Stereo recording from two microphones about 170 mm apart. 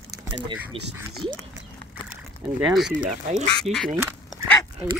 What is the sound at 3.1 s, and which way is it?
Speech, 45° right (ahead or behind).